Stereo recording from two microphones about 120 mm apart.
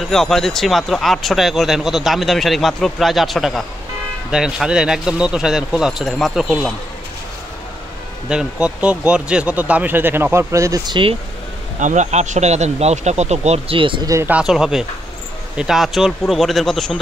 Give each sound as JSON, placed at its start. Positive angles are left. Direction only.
{"t": 0.1, "sound": "speech", "side_deg": 5}
{"t": 8.3, "sound": "speech", "side_deg": -5}
{"t": 10.9, "sound": "speech", "side_deg": -45}
{"t": 11.8, "sound": "speech", "side_deg": -85}
{"t": 13.7, "sound": "speech", "side_deg": -45}
{"t": 14.4, "sound": "speech", "side_deg": -5}